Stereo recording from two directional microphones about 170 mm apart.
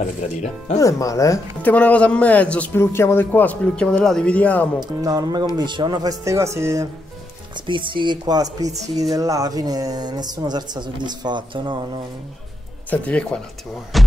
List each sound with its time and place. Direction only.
0.0 s speech: 45° left (ahead or behind)
0.7 s speech: 20° left (ahead or behind)
4.7 s a woman's voice: 20° right (ahead or behind)
7.5 s a woman's voice: 30° right (ahead or behind)
12.9 s speech: 10° left (ahead or behind)
13.9 s music: centre (ahead or behind)